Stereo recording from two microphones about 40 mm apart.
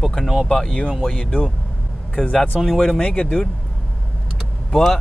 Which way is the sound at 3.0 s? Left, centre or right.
Left.